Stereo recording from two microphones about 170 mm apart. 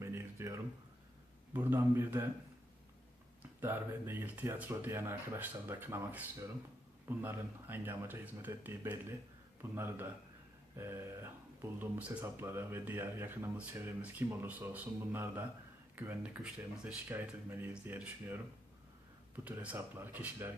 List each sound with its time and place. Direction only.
0.0 s a sound: 15° right (ahead or behind)
1.5 s speech: 15° right (ahead or behind)
3.6 s speech: 15° right (ahead or behind)
19.6 s speech: 10° right (ahead or behind)